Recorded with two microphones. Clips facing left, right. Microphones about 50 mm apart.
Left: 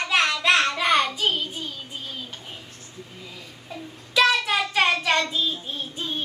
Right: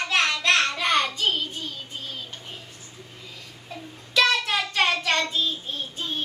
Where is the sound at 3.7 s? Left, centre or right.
Centre.